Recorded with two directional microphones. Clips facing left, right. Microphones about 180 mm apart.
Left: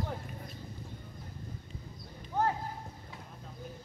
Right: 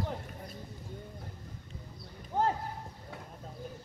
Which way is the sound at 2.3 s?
45° right (ahead or behind).